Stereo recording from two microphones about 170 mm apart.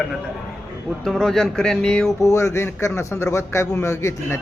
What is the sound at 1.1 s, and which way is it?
Speech, centre (ahead or behind).